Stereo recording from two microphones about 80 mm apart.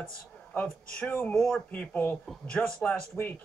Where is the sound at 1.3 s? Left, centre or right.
Centre.